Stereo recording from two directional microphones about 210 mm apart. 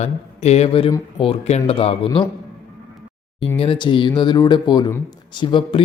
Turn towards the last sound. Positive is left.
turn(degrees=25)  # may be behind; listen again after turning